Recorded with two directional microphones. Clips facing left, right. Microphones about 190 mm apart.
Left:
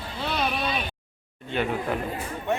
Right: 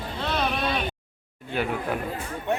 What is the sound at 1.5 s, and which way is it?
Speech, 5° right (ahead or behind).